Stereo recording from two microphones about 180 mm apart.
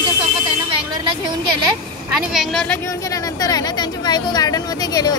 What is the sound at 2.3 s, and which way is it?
Speech, centre (ahead or behind).